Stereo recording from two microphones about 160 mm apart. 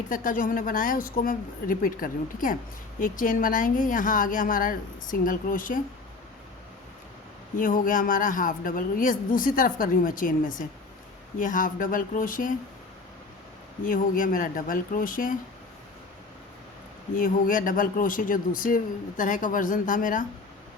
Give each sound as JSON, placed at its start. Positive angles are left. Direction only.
{"t": 0.1, "sound": "speech", "side_deg": 60}
{"t": 7.5, "sound": "speech", "side_deg": 60}
{"t": 13.8, "sound": "speech", "side_deg": 60}
{"t": 17.2, "sound": "speech", "side_deg": 60}